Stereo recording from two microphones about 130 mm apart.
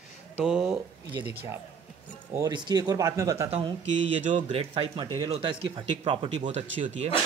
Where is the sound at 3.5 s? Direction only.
45° right (ahead or behind).